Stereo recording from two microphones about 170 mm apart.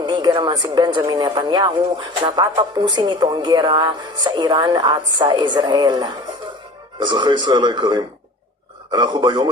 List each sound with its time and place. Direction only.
0.0 s speech: 25° right (ahead or behind)